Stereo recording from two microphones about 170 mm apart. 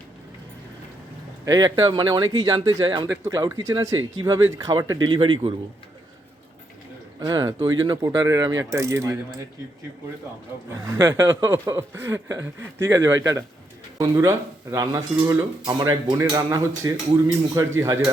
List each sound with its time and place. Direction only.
1.5 s speech: 20° right (ahead or behind)
7.2 s speech: 25° right (ahead or behind)
10.7 s speech: 15° right (ahead or behind)